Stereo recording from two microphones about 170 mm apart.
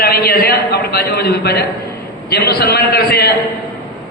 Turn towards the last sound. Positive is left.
turn(degrees=65)  # may be behind; listen again after turning